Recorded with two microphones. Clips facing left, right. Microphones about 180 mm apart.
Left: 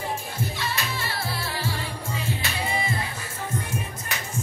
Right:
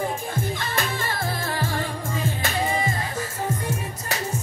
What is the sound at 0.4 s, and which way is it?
Music, 50° right (ahead or behind).